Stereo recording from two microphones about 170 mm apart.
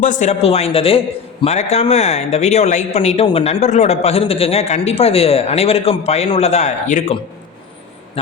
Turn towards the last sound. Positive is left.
turn(degrees=45)  # may be behind; listen again after turning